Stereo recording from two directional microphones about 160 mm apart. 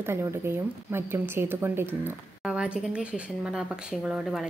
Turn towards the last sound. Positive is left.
turn(degrees=-5)  # may be behind; listen again after turning